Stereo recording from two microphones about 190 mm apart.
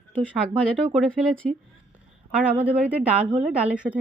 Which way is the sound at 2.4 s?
10° right (ahead or behind).